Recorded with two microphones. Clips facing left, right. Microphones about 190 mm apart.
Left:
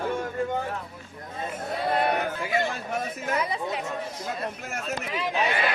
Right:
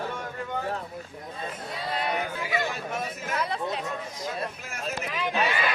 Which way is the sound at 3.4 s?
10° left (ahead or behind).